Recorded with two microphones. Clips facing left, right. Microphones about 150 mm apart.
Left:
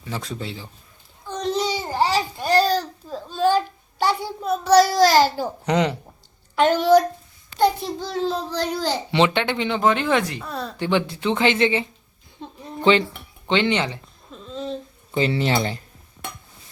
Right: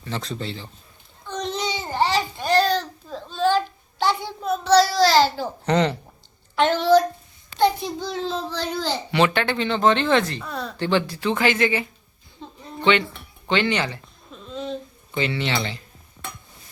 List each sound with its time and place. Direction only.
0.0 s speech: 10° left (ahead or behind)
1.3 s a sound: 5° left (ahead or behind)
5.0 s speech: 10° left (ahead or behind)
7.6 s a child's voice: 5° left (ahead or behind)
10.8 s speech: 15° left (ahead or behind); by 13.1 s 35° left (ahead or behind)
13.5 s speech: 20° left (ahead or behind)
14.3 s a sound: centre (ahead or behind)
15.1 s speech: 35° left (ahead or behind)